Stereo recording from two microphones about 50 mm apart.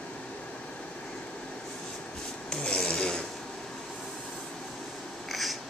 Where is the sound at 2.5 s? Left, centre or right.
Centre.